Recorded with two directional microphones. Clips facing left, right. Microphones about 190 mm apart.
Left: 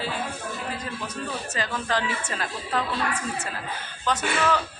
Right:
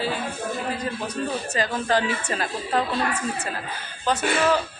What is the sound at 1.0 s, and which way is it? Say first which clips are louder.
Speech: right 5 dB; 35° right (ahead or behind).